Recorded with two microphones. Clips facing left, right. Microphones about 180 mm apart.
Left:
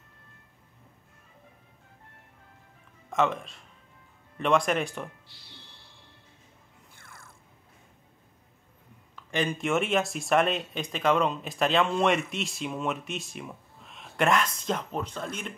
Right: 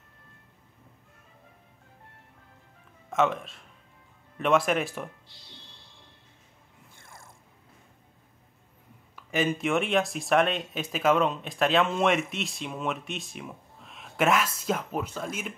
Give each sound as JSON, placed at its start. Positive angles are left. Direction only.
{"t": 3.1, "sound": "speech", "side_deg": 0}
{"t": 5.3, "sound": "music", "side_deg": -20}
{"t": 9.1, "sound": "speech", "side_deg": -5}